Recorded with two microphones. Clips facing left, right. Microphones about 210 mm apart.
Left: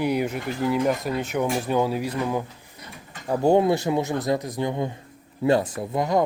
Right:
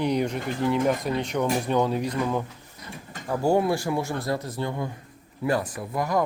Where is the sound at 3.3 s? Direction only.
20° left (ahead or behind).